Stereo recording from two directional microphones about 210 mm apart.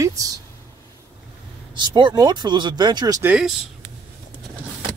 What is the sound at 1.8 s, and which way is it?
Speech, 20° right (ahead or behind).